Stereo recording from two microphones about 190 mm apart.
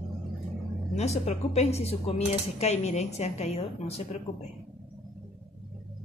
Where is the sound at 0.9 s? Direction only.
35° left (ahead or behind).